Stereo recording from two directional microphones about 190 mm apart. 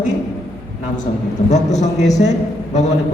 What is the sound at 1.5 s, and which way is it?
Speech, 35° left (ahead or behind).